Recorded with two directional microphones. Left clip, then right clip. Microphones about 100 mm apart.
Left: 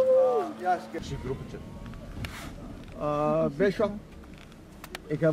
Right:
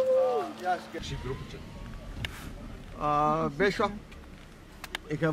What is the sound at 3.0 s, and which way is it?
Speech, 20° right (ahead or behind).